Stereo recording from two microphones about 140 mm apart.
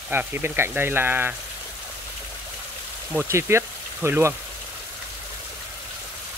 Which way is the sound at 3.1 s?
15° right (ahead or behind).